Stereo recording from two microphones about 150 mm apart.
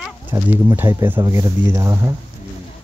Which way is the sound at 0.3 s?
15° right (ahead or behind).